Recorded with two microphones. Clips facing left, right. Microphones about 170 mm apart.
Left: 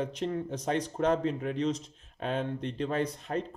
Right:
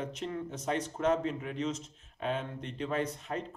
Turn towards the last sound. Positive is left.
turn(degrees=35)  # may be behind; listen again after turning